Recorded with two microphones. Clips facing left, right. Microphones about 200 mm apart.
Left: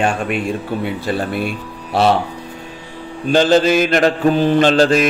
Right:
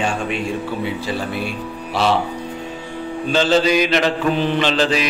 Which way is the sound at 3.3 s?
50° left (ahead or behind).